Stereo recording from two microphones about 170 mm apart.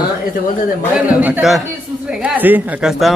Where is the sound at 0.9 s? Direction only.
5° right (ahead or behind).